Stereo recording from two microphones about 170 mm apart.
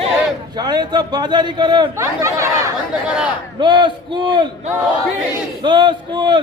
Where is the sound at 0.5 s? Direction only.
25° right (ahead or behind).